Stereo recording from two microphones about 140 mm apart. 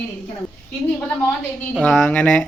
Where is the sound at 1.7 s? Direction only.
5° left (ahead or behind).